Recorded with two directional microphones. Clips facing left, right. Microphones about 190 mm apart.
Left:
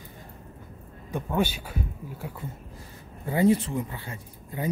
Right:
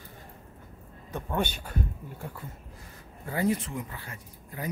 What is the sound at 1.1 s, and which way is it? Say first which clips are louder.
Speech: left 4 dB; 5° left (ahead or behind).